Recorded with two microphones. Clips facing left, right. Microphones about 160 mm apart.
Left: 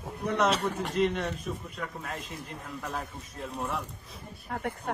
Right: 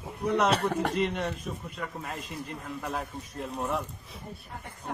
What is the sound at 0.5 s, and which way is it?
Speech, 65° right (ahead or behind).